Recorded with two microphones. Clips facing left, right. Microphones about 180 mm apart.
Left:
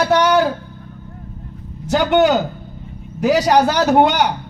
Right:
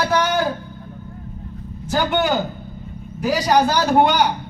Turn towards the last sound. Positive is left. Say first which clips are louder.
# left 2 dB
turn(degrees=80)